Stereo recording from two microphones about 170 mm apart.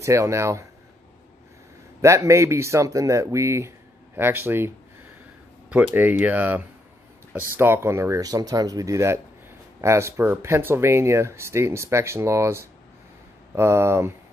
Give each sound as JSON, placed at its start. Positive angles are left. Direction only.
{"t": 0.0, "sound": "speech", "side_deg": -15}
{"t": 2.0, "sound": "speech", "side_deg": -15}